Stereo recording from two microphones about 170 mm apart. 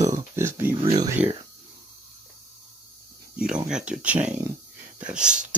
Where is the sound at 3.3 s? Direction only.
5° right (ahead or behind).